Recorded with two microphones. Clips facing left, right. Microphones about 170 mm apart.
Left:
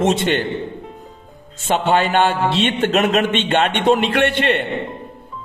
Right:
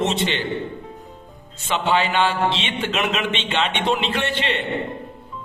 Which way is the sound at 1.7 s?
50° left (ahead or behind).